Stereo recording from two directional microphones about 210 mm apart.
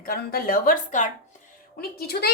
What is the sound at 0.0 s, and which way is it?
A woman's voice, 45° left (ahead or behind).